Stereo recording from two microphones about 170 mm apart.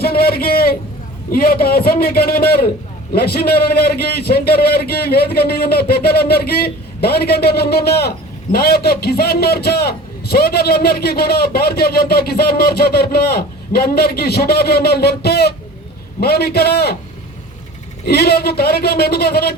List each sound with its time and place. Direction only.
0.0 s a sound: 65° left (ahead or behind)
1.3 s a man's voice: 60° left (ahead or behind)
18.0 s a man's voice: 70° left (ahead or behind)